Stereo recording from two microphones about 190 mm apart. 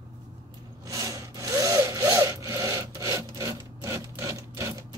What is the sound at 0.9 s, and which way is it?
Wood, 15° right (ahead or behind).